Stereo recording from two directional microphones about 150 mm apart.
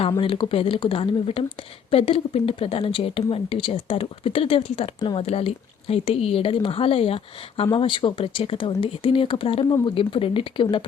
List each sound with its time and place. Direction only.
0.2 s speech: 35° left (ahead or behind)
5.2 s speech: 40° left (ahead or behind)